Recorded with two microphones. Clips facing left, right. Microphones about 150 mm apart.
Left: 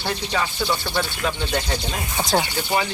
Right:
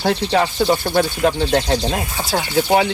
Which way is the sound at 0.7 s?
45° right (ahead or behind).